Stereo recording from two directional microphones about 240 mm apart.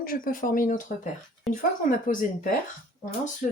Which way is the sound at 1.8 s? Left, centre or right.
Left.